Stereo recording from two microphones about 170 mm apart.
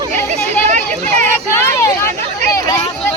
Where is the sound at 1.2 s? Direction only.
15° left (ahead or behind).